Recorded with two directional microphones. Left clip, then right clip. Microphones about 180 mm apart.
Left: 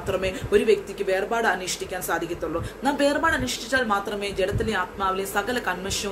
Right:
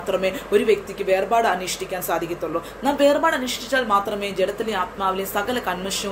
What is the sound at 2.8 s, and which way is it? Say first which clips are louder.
A woman's voice: right 4 dB; 10° left (ahead or behind).